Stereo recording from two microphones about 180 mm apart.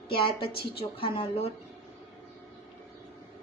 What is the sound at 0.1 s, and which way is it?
A woman's voice, 30° left (ahead or behind).